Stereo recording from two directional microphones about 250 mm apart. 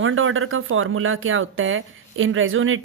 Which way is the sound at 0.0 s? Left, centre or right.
Right.